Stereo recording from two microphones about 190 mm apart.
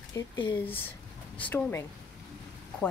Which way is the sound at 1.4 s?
10° left (ahead or behind).